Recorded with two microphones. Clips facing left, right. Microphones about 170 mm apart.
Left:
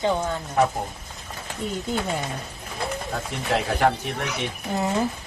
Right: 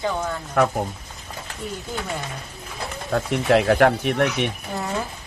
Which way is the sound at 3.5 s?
70° right (ahead or behind).